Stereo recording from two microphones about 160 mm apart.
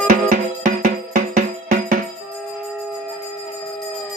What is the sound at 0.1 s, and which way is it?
Music, 60° right (ahead or behind).